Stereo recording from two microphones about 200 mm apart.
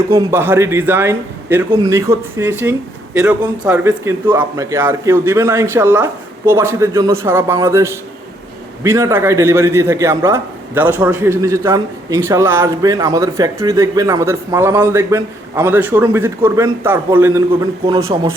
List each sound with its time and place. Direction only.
0.1 s a man's voice: 15° right (ahead or behind)
18.1 s a man's voice: 20° right (ahead or behind)